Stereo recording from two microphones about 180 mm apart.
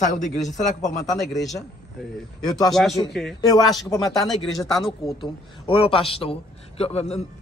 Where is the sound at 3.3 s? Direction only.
20° left (ahead or behind).